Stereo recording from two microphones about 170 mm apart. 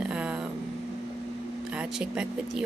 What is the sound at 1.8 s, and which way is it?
Speech, 5° right (ahead or behind).